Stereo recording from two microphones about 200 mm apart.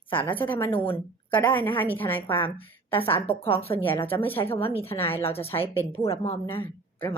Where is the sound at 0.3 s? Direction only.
10° left (ahead or behind).